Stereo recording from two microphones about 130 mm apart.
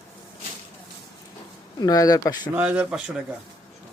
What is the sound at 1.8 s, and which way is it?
Speech, 30° left (ahead or behind).